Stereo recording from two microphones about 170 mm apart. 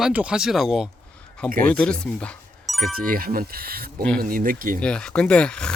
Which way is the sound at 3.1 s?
55° right (ahead or behind).